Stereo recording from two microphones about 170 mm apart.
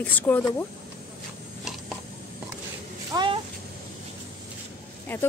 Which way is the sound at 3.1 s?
25° right (ahead or behind).